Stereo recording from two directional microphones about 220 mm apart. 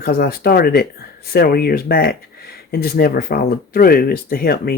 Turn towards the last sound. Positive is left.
turn(degrees=45)  # may be behind; listen again after turning